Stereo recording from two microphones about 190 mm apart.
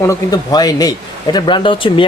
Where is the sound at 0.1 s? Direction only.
20° left (ahead or behind).